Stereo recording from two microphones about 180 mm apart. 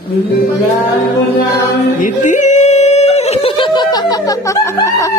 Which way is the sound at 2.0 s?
45° left (ahead or behind).